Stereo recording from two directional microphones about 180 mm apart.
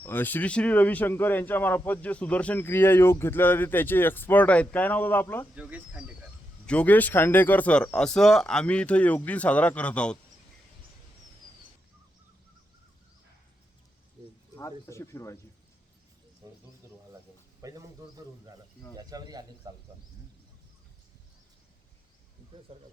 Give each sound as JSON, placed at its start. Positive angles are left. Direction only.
{"t": 0.0, "sound": "speech", "side_deg": 10}
{"t": 5.5, "sound": "speech", "side_deg": -5}
{"t": 6.7, "sound": "speech", "side_deg": 10}
{"t": 14.8, "sound": "speech", "side_deg": 15}
{"t": 17.6, "sound": "a sound", "side_deg": -20}
{"t": 18.9, "sound": "speech", "side_deg": -20}
{"t": 22.7, "sound": "speech", "side_deg": -30}